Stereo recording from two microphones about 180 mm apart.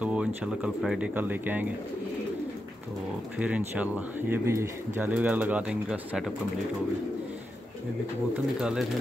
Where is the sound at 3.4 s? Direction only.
10° right (ahead or behind).